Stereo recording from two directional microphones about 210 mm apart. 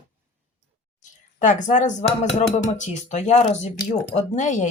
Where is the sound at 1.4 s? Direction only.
35° left (ahead or behind).